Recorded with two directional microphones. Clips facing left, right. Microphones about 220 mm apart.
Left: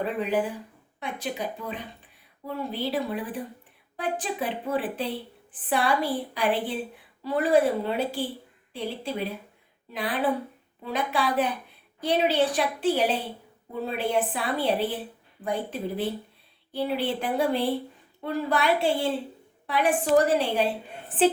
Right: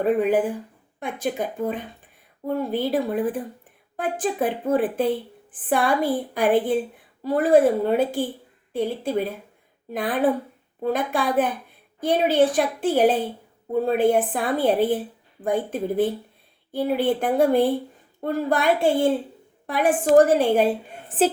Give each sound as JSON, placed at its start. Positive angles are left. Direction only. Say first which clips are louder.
{"t": 0.0, "sound": "a woman's voice", "louder": "right 7 dB", "side_deg": -50}